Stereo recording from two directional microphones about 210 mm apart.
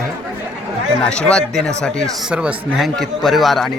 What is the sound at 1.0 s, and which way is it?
A man's voice, 5° left (ahead or behind).